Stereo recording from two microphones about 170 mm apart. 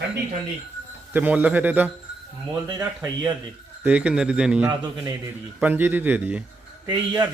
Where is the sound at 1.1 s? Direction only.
10° right (ahead or behind).